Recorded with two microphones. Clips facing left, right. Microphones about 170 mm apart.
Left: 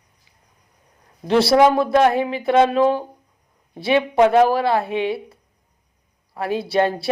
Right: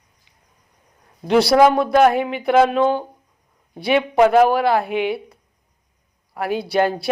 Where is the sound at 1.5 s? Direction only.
30° left (ahead or behind).